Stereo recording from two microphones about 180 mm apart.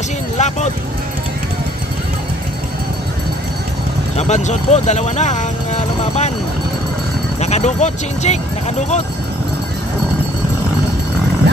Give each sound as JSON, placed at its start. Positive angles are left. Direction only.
{"t": 0.4, "sound": "a sound", "side_deg": 40}
{"t": 4.2, "sound": "speech", "side_deg": 40}
{"t": 7.3, "sound": "speech", "side_deg": 40}